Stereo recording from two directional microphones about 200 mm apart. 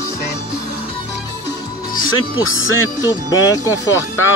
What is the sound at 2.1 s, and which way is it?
Speech, 90° left.